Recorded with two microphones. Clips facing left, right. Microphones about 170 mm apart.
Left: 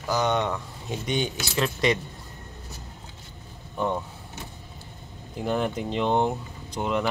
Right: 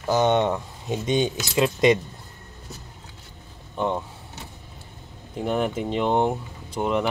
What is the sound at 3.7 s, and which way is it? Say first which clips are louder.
Speech: right 2 dB; 25° right (ahead or behind).